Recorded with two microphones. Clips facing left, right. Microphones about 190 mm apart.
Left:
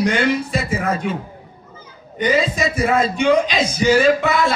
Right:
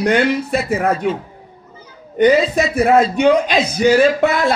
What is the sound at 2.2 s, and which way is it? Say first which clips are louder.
Speech: right 6 dB; 60° right (ahead or behind).